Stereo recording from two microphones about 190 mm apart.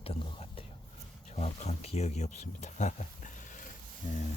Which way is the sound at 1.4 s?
35° left (ahead or behind).